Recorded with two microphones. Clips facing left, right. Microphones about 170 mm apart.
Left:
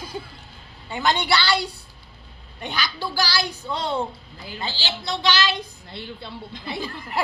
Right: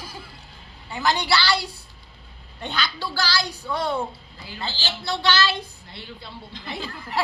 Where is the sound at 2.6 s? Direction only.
10° left (ahead or behind).